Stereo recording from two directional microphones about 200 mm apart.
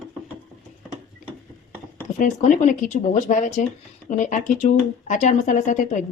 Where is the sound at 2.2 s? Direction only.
40° left (ahead or behind).